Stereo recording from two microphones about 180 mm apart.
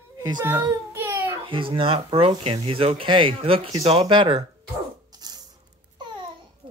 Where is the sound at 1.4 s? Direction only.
30° right (ahead or behind).